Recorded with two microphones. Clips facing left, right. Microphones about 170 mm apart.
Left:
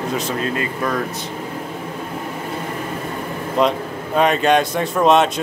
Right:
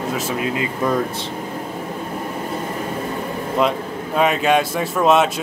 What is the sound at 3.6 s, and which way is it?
Speech, 5° right (ahead or behind).